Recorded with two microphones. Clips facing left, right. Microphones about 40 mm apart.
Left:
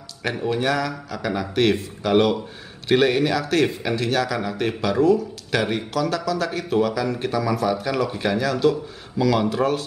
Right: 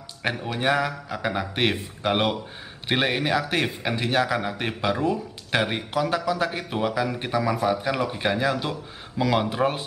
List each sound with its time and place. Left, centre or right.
0.2 s a man's voice: centre
0.6 s a man's voice: centre